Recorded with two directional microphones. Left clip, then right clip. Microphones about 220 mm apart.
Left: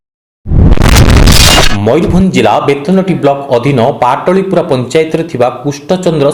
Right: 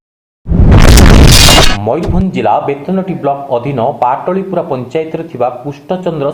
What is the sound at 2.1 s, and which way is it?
Speech, 45° left (ahead or behind).